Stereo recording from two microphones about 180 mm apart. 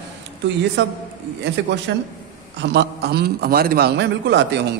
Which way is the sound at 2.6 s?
70° right (ahead or behind).